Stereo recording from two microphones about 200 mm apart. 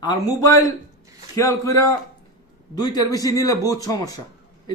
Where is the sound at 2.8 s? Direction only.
20° left (ahead or behind).